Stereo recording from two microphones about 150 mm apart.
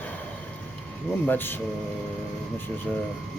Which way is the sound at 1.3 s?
15° left (ahead or behind).